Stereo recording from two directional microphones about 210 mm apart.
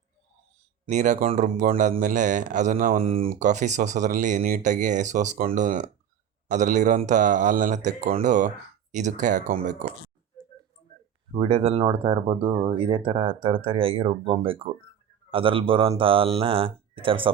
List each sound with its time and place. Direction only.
0.9 s speech: 35° right (ahead or behind)
3.0 s speech: 25° right (ahead or behind)
11.3 s speech: 30° right (ahead or behind)